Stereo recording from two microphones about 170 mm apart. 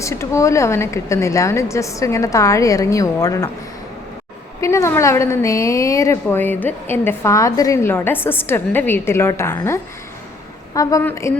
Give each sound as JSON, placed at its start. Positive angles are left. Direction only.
{"t": 0.0, "sound": "a woman's voice", "side_deg": 15}
{"t": 4.6, "sound": "a woman's voice", "side_deg": 15}